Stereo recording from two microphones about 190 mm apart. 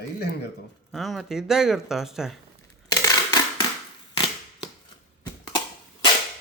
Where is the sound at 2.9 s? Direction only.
20° left (ahead or behind).